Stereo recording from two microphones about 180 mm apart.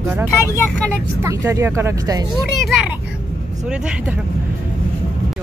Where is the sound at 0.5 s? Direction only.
10° left (ahead or behind).